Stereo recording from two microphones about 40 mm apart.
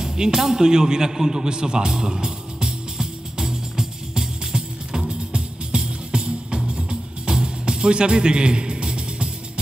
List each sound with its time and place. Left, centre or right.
0.0 s speech: centre
0.7 s music: centre